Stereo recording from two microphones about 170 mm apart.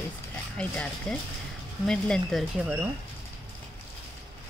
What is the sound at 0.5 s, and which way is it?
Speech, 10° left (ahead or behind).